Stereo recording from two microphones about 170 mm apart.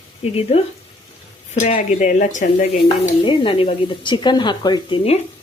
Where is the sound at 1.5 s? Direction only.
45° left (ahead or behind).